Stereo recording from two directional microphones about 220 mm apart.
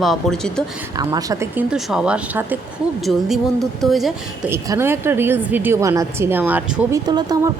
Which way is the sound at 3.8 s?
Centre (ahead or behind).